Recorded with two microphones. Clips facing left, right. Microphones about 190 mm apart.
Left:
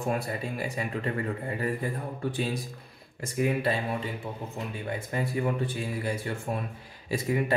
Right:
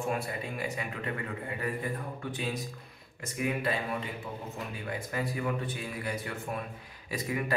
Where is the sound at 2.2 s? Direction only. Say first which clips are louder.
Left 7 dB; 35° left (ahead or behind).